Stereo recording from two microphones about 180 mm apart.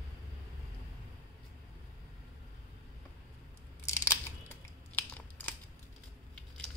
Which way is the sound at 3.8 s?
15° left (ahead or behind).